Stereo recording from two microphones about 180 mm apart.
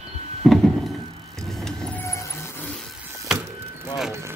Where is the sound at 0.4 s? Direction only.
Centre (ahead or behind).